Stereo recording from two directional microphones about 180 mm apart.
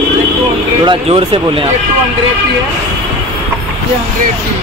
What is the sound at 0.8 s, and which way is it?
Speech, 30° right (ahead or behind).